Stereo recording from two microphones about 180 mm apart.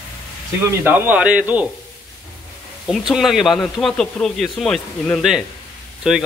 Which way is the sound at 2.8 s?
Centre (ahead or behind).